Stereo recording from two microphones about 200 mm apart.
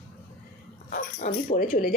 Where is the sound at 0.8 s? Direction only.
45° left (ahead or behind).